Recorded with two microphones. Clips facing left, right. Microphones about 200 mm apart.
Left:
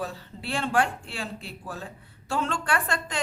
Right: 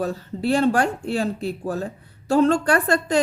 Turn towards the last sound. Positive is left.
turn(degrees=-40)  # may be behind; listen again after turning